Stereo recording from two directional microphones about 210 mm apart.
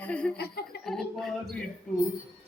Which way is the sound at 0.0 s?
5° left (ahead or behind).